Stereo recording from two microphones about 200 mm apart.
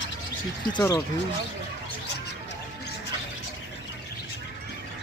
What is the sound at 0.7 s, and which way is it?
Speech, 15° left (ahead or behind).